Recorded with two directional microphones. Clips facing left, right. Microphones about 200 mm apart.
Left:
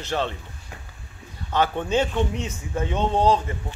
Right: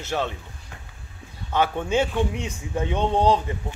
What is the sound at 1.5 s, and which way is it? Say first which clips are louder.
A man's voice: even; 10° right (ahead or behind).